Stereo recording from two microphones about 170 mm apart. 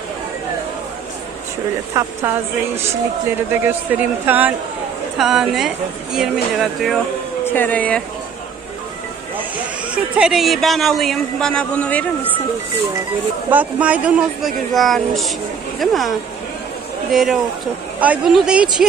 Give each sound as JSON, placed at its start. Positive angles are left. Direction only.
{"t": 2.0, "sound": "speech", "side_deg": -20}
{"t": 3.5, "sound": "speech", "side_deg": -10}
{"t": 7.4, "sound": "speech", "side_deg": 10}
{"t": 9.9, "sound": "speech", "side_deg": -5}
{"t": 13.5, "sound": "speech", "side_deg": -10}